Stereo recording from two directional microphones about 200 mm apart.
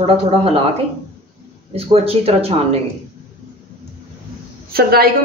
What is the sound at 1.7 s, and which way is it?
Speech, 30° right (ahead or behind).